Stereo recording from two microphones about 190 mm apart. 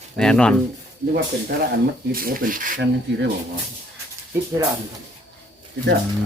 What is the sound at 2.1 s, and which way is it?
Speech, 50° right (ahead or behind).